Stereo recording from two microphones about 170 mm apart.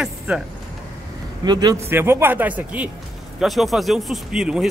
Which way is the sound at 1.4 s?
25° right (ahead or behind).